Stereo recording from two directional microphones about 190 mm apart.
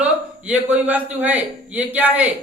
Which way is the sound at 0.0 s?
10° right (ahead or behind).